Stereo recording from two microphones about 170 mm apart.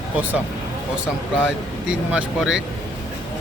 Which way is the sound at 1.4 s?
5° right (ahead or behind).